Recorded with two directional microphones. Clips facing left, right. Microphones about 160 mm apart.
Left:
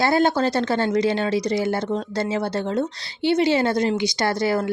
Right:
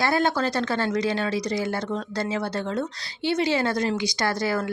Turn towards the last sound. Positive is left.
turn(degrees=25)  # may be behind; listen again after turning